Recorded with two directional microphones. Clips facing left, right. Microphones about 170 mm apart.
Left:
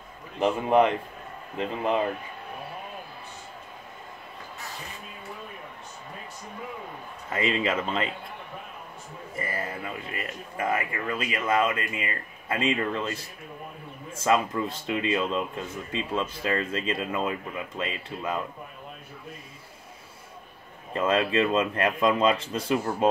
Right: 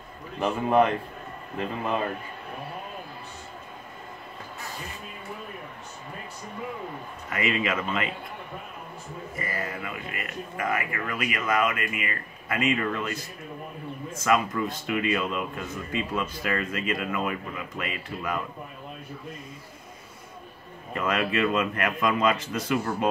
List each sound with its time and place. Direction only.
0.4 s a man's voice: 20° left (ahead or behind)
7.2 s a man's voice: 30° left (ahead or behind)
9.4 s a man's voice: 30° left (ahead or behind)
20.9 s a man's voice: 25° left (ahead or behind)